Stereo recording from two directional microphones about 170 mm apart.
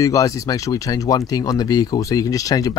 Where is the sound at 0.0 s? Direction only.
20° left (ahead or behind).